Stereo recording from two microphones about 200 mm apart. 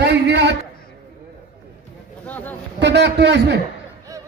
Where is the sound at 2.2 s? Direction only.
10° left (ahead or behind).